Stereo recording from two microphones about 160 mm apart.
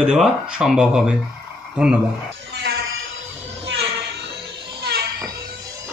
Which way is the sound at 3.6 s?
90° right.